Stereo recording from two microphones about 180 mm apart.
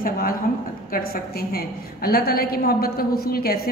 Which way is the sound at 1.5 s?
60° left (ahead or behind).